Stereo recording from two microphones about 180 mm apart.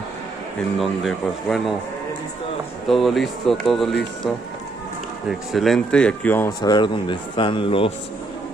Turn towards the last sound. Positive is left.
turn(degrees=30)  # may be behind; listen again after turning